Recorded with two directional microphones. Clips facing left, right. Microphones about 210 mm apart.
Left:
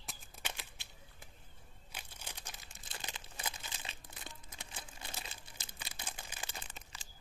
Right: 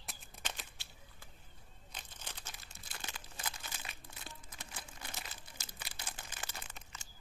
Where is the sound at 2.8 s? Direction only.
25° left (ahead or behind).